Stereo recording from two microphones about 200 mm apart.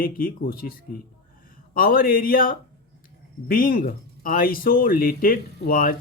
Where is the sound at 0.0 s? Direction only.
45° left (ahead or behind).